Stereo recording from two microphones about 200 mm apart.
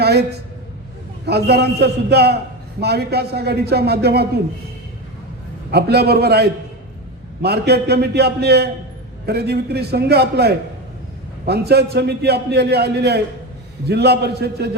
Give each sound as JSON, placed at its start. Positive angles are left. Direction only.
{"t": 0.0, "sound": "a woman's voice", "side_deg": -55}
{"t": 5.7, "sound": "a man's voice", "side_deg": -55}